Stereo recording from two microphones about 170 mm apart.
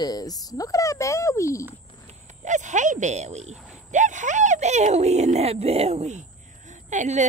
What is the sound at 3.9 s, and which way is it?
A woman's voice, 45° right (ahead or behind).